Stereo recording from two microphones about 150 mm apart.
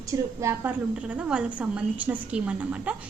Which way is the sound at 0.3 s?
20° right (ahead or behind).